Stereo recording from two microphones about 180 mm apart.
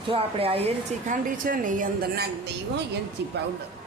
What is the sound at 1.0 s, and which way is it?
A woman's voice, 50° right (ahead or behind).